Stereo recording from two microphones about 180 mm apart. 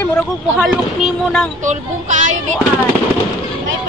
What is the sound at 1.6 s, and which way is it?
Speech, 45° right (ahead or behind).